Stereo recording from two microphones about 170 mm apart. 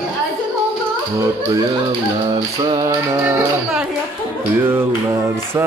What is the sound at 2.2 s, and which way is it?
Music, 20° right (ahead or behind).